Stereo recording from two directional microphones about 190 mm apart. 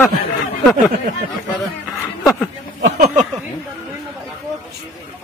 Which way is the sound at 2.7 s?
65° right (ahead or behind).